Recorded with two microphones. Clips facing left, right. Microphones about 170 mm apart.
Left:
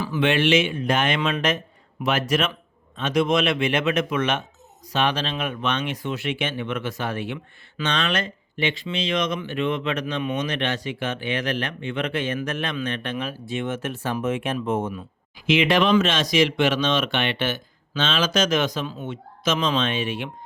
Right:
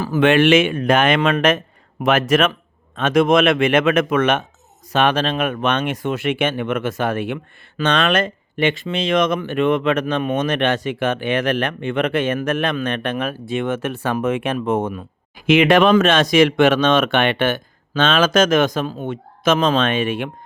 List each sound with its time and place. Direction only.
0.0 s speech: 45° right (ahead or behind)